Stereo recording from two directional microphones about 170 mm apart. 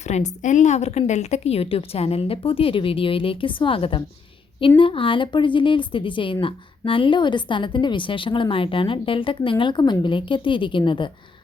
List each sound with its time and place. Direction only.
0.0 s a woman's voice: 40° left (ahead or behind)